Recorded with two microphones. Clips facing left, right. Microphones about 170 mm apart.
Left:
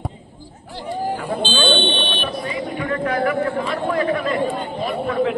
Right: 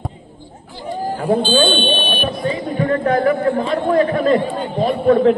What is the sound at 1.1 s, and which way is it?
Buzzer, 35° right (ahead or behind).